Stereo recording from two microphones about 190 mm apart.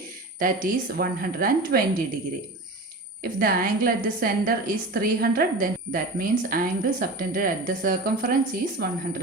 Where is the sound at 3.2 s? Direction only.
50° right (ahead or behind).